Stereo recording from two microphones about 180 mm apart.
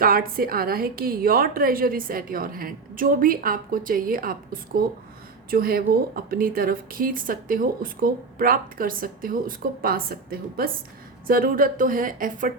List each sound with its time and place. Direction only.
0.0 s a woman's voice: 55° right (ahead or behind)